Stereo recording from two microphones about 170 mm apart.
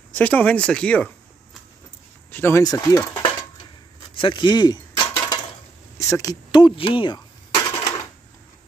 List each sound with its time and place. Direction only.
0.1 s speech: 10° left (ahead or behind)
4.1 s cutlery: 30° left (ahead or behind)
5.1 s a sound: 20° left (ahead or behind)
5.9 s speech: 20° left (ahead or behind)
7.7 s dishes: 25° left (ahead or behind)